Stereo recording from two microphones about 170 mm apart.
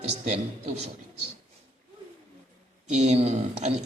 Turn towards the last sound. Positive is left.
turn(degrees=-40)  # may be behind; listen again after turning